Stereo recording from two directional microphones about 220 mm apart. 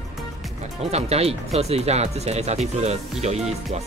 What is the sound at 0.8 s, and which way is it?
Speech, 30° right (ahead or behind).